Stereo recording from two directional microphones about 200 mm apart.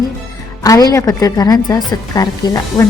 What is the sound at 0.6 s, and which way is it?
A woman's voice, 15° left (ahead or behind).